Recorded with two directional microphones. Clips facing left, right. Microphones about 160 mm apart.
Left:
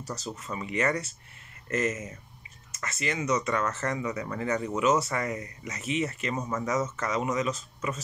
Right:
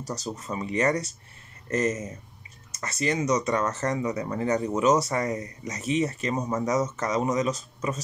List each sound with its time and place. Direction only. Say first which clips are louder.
0.0 s speech: right 3 dB; 40° right (ahead or behind)